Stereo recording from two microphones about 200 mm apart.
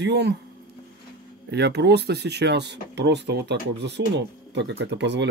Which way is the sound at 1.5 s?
55° right (ahead or behind).